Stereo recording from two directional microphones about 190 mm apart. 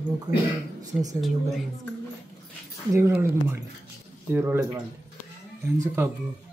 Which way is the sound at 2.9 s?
15° right (ahead or behind).